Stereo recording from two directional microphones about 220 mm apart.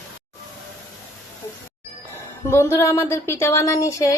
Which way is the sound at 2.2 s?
10° left (ahead or behind).